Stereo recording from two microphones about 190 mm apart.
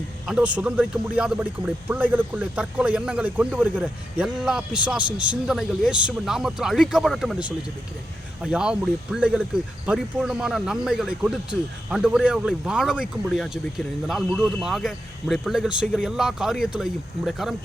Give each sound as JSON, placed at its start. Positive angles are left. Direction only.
{"t": 0.3, "sound": "a man's voice", "side_deg": -5}